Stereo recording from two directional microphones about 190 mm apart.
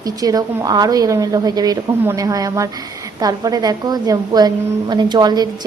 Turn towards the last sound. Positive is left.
turn(degrees=-20)  # may be behind; listen again after turning